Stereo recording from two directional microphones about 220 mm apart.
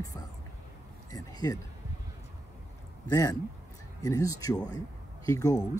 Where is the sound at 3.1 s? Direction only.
15° left (ahead or behind).